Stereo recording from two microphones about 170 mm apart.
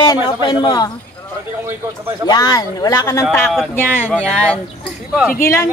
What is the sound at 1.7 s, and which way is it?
Speech, 15° right (ahead or behind).